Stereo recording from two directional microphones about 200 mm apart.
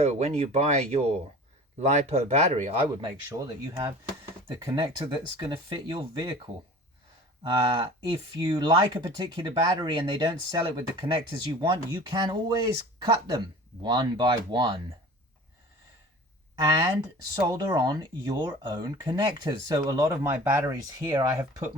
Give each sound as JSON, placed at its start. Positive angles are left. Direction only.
{"t": 0.0, "sound": "speech", "side_deg": -35}
{"t": 2.9, "sound": "speech", "side_deg": -15}
{"t": 17.4, "sound": "speech", "side_deg": -15}